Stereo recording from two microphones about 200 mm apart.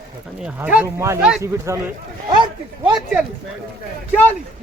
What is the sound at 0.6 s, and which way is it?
Speech, 5° right (ahead or behind).